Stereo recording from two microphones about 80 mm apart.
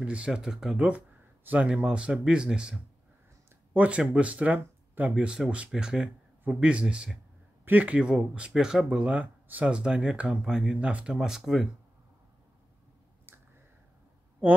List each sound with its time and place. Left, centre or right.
0.0 s speech: centre
5.1 s speech: centre